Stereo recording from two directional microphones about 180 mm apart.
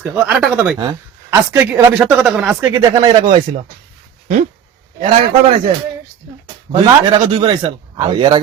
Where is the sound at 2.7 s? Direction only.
20° right (ahead or behind).